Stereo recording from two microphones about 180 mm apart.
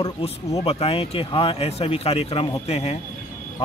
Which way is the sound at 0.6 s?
35° left (ahead or behind).